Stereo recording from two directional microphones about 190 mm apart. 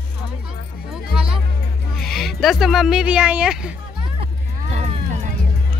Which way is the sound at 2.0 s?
Centre (ahead or behind).